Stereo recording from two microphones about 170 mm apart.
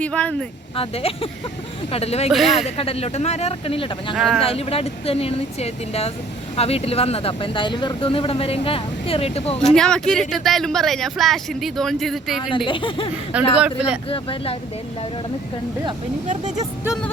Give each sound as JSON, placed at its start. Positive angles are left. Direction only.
{"t": 0.0, "sound": "speech", "side_deg": 5}
{"t": 0.8, "sound": "speech", "side_deg": 35}
{"t": 2.3, "sound": "speech", "side_deg": 0}
{"t": 2.6, "sound": "speech", "side_deg": 35}
{"t": 4.1, "sound": "speech", "side_deg": 0}
{"t": 4.4, "sound": "speech", "side_deg": 35}
{"t": 9.6, "sound": "speech", "side_deg": 5}
{"t": 12.5, "sound": "speech", "side_deg": 30}
{"t": 13.6, "sound": "speech", "side_deg": -5}
{"t": 14.1, "sound": "speech", "side_deg": 30}